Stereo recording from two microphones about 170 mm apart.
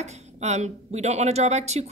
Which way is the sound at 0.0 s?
40° right (ahead or behind).